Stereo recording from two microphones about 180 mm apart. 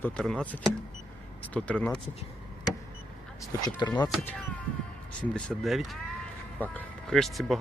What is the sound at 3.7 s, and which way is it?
Speech, 20° left (ahead or behind).